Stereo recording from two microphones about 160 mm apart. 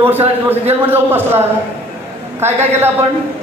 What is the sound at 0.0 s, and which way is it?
A man's voice, 10° right (ahead or behind).